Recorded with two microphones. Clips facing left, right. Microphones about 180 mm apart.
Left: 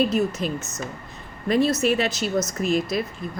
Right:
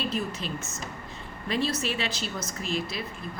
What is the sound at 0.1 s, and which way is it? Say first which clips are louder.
Speech: left 8 dB; 45° left (ahead or behind).